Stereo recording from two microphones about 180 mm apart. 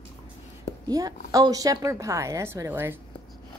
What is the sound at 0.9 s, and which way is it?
A woman's voice, 20° right (ahead or behind).